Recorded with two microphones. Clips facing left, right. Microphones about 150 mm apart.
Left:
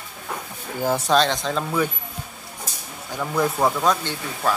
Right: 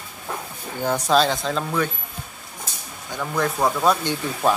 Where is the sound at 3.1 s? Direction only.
5° left (ahead or behind); by 4.6 s 20° right (ahead or behind).